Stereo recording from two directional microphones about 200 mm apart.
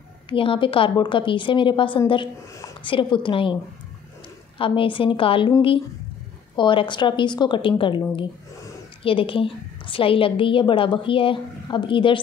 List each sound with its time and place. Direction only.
0.3 s a woman's voice: 25° left (ahead or behind)
4.6 s a woman's voice: 25° left (ahead or behind)
6.5 s a woman's voice: 25° left (ahead or behind)